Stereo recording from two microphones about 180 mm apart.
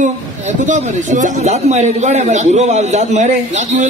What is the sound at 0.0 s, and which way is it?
Speech, 45° right (ahead or behind).